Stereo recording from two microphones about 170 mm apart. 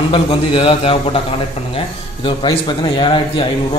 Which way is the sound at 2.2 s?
30° left (ahead or behind).